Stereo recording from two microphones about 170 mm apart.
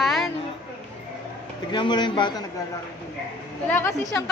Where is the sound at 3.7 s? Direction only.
10° left (ahead or behind).